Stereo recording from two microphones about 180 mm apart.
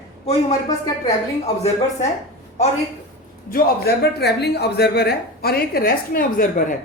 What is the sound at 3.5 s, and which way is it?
Speech, 55° left (ahead or behind).